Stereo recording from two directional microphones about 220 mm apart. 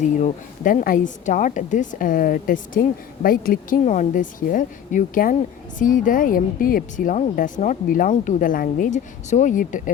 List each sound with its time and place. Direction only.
0.2 s speech: 35° left (ahead or behind)